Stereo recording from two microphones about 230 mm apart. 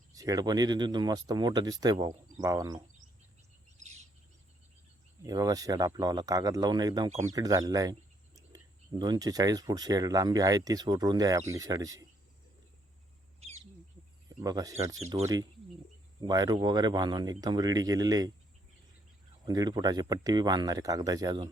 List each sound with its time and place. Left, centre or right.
0.1 s speech: centre
3.8 s bird: right
5.2 s speech: centre
14.4 s speech: centre
19.5 s speech: centre